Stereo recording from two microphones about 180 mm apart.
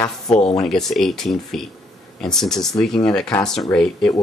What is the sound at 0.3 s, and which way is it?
Speech, 30° left (ahead or behind).